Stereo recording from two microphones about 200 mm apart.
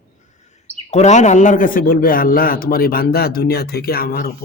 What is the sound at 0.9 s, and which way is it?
A man's voice, 35° left (ahead or behind).